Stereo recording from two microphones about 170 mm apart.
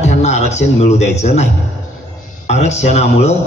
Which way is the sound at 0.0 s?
40° left (ahead or behind).